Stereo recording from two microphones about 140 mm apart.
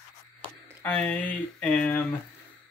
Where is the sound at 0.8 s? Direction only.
10° left (ahead or behind).